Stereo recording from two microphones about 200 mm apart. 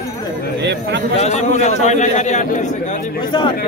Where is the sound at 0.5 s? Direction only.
60° right (ahead or behind).